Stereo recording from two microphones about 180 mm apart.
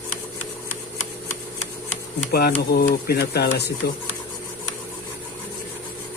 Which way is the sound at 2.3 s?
60° left (ahead or behind).